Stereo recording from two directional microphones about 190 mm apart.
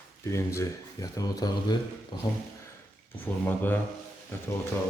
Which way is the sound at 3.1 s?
10° left (ahead or behind).